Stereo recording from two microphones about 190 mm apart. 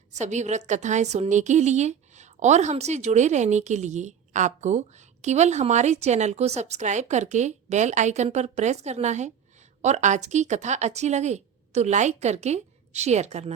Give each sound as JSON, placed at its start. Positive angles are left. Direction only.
{"t": 0.1, "sound": "a woman's voice", "side_deg": -40}